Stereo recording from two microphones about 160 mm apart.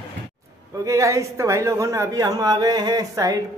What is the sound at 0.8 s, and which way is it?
A man's voice, 20° right (ahead or behind).